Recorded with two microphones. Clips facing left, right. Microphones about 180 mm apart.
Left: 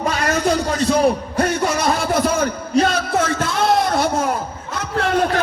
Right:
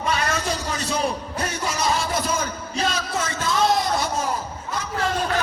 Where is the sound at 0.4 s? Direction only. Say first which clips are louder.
Left 9 dB; 60° left (ahead or behind).